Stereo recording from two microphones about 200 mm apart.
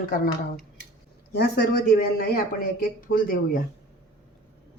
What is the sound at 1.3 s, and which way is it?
Speech, 50° left (ahead or behind).